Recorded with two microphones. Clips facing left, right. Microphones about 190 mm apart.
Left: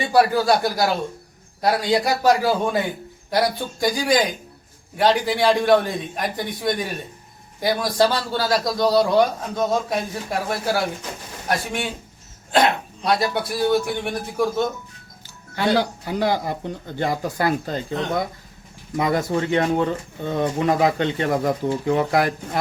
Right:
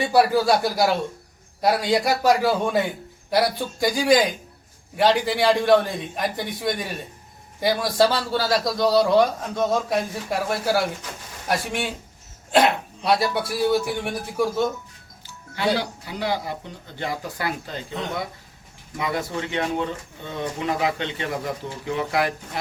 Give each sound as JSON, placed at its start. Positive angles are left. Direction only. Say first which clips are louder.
{"t": 0.0, "sound": "a man's voice", "louder": "left 1 dB", "side_deg": 0}
{"t": 15.5, "sound": "speech", "louder": "left 3 dB", "side_deg": 45}